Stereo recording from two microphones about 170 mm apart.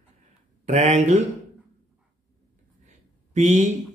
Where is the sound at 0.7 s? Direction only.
40° right (ahead or behind).